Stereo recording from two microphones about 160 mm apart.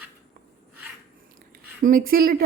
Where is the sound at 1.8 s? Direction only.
60° right (ahead or behind).